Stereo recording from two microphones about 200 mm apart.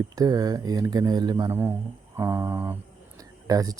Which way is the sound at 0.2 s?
20° right (ahead or behind).